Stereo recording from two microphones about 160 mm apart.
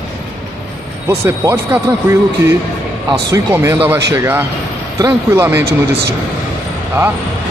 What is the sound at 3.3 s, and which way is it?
Speech, 15° right (ahead or behind).